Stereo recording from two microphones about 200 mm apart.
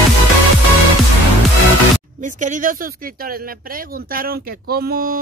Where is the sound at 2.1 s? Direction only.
40° right (ahead or behind).